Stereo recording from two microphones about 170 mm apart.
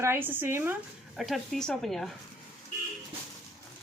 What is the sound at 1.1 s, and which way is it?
Speech, centre (ahead or behind).